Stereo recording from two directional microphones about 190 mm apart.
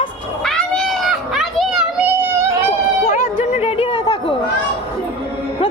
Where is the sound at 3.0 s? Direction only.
40° left (ahead or behind).